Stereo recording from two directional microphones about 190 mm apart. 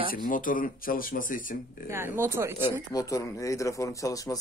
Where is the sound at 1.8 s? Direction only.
15° right (ahead or behind).